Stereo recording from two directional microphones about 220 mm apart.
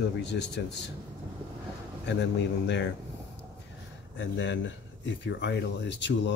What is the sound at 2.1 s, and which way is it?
Speech, 50° left (ahead or behind).